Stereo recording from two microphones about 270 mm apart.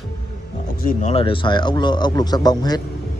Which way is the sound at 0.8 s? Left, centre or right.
Left.